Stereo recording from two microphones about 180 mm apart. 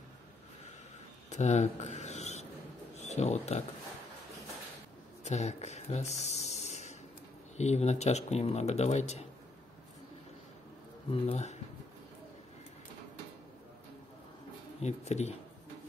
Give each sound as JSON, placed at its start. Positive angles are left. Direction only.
{"t": 1.3, "sound": "writing", "side_deg": 40}
{"t": 3.0, "sound": "speech", "side_deg": 40}
{"t": 5.2, "sound": "a sound", "side_deg": 40}
{"t": 7.5, "sound": "speech", "side_deg": 40}
{"t": 11.1, "sound": "speech", "side_deg": 35}
{"t": 14.8, "sound": "speech", "side_deg": 40}